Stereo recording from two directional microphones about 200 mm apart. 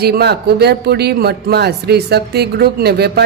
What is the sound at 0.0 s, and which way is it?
A man's voice, 55° right (ahead or behind).